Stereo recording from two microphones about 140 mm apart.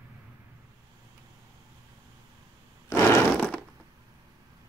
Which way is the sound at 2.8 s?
20° left (ahead or behind).